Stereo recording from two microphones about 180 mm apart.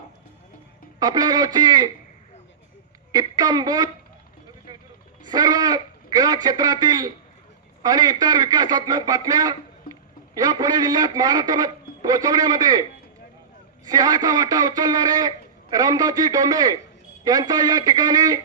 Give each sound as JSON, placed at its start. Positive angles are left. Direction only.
{"t": 0.9, "sound": "a man's voice", "side_deg": -25}
{"t": 3.1, "sound": "a man's voice", "side_deg": -20}
{"t": 5.2, "sound": "a man's voice", "side_deg": -25}
{"t": 13.8, "sound": "a man's voice", "side_deg": -20}